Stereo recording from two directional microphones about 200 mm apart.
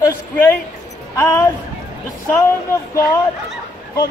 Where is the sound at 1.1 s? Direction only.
15° left (ahead or behind).